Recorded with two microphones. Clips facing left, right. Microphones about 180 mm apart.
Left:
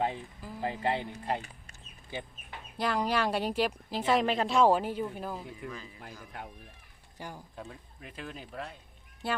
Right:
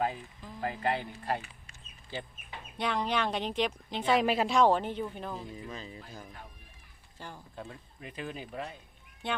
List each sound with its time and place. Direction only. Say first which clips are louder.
0.4 s speech: left 1 dB; 10° left (ahead or behind)
0.7 s speech: even; 25° left (ahead or behind)
2.1 s speech: even; 15° left (ahead or behind)
2.7 s a woman's voice: left 2 dB; 5° left (ahead or behind)
5.6 s speech: even; 25° right (ahead or behind)
6.3 s speech: left 7 dB; 70° left (ahead or behind)
7.2 s speech: left 3 dB; 15° left (ahead or behind)
7.5 s a woman's voice: right 1 dB; centre (ahead or behind)